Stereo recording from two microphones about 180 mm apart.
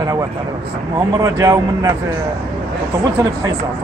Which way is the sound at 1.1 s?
20° right (ahead or behind).